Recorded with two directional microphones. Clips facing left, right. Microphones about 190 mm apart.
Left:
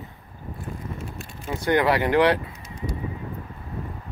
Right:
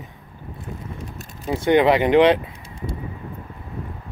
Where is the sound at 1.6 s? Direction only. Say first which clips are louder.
Right 5 dB; 20° right (ahead or behind).